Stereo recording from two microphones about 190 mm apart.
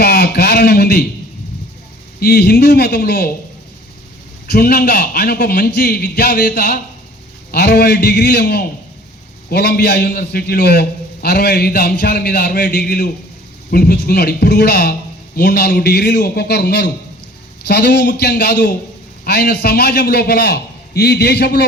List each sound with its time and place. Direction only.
0.0 s a sound: 55° left (ahead or behind)
2.2 s a man's voice: 60° left (ahead or behind)
4.4 s a man's voice: 55° left (ahead or behind)